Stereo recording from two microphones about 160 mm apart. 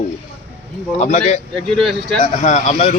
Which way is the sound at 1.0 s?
45° left (ahead or behind).